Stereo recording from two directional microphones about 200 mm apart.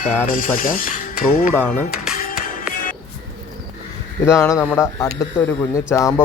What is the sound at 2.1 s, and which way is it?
Music, 45° left (ahead or behind).